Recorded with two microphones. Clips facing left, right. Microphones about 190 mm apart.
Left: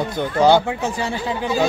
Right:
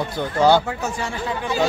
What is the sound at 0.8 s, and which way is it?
Speech, 30° left (ahead or behind).